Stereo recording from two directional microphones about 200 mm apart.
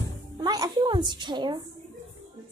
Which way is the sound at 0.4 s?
20° right (ahead or behind).